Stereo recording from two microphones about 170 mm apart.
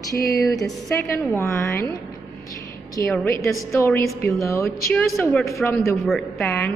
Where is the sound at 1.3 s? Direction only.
15° left (ahead or behind).